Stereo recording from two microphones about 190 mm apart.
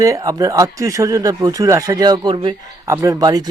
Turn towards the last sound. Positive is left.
turn(degrees=-20)  # may be behind; listen again after turning